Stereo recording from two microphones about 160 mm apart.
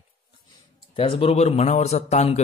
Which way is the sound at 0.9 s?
35° left (ahead or behind).